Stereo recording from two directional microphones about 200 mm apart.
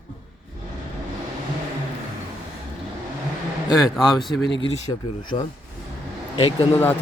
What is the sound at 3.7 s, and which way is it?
Speech, centre (ahead or behind).